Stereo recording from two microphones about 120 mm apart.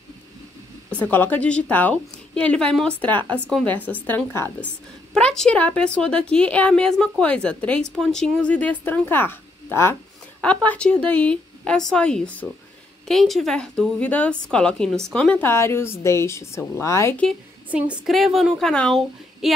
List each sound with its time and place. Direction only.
0.8 s a woman's voice: 10° left (ahead or behind)
5.1 s a woman's voice: 5° left (ahead or behind); by 17.2 s 25° left (ahead or behind)
17.6 s a woman's voice: 10° right (ahead or behind)
18.1 s speech: centre (ahead or behind)